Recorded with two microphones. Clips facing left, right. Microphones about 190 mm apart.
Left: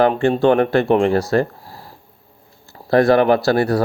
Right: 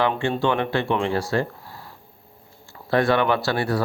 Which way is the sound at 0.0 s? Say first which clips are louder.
Left 7 dB; 45° left (ahead or behind).